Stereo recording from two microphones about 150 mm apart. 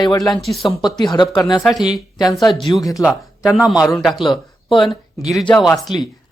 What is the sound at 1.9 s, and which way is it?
Speech, 25° left (ahead or behind).